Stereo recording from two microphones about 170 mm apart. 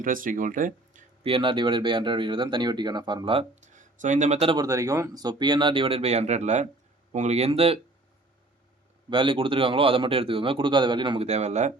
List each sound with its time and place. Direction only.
0.0 s speech: 50° right (ahead or behind)
1.2 s speech: 30° right (ahead or behind)
3.7 s speech: 45° right (ahead or behind)
4.5 s a man's voice: 20° right (ahead or behind); by 7.8 s 35° right (ahead or behind)
9.0 s a man's voice: 30° right (ahead or behind)